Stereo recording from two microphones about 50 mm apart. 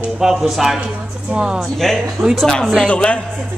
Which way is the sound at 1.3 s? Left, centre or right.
Centre.